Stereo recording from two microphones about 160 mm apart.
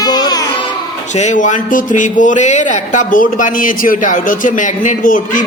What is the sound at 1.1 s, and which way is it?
Speech, 50° left (ahead or behind).